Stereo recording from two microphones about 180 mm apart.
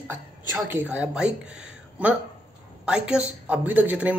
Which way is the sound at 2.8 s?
5° right (ahead or behind).